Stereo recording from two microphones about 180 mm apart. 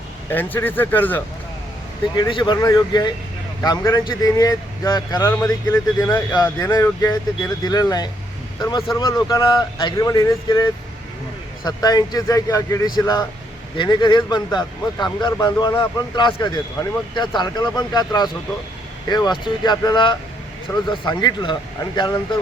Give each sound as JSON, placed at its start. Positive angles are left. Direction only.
{"t": 0.3, "sound": "speech", "side_deg": 10}
{"t": 2.1, "sound": "a man's voice", "side_deg": 25}